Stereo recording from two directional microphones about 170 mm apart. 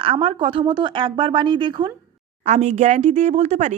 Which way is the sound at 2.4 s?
40° right (ahead or behind).